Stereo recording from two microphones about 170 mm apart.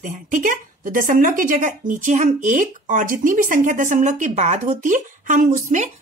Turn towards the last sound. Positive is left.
turn(degrees=-50)  # may be behind; listen again after turning